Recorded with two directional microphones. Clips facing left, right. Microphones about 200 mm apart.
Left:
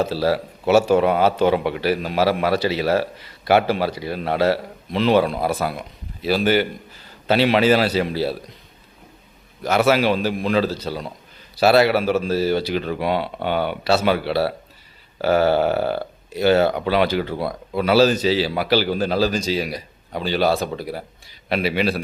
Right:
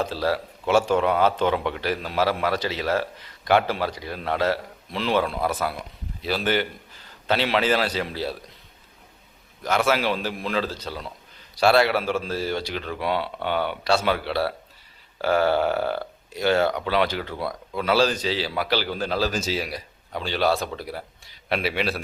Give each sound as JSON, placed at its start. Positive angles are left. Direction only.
{"t": 0.0, "sound": "a man's voice", "side_deg": 5}
{"t": 9.6, "sound": "a man's voice", "side_deg": 10}
{"t": 15.8, "sound": "speech", "side_deg": 30}
{"t": 16.3, "sound": "a man's voice", "side_deg": 5}